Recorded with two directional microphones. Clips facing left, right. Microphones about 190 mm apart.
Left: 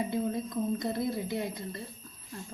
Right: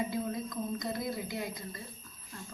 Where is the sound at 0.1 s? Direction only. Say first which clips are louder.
Left 4 dB; 30° left (ahead or behind).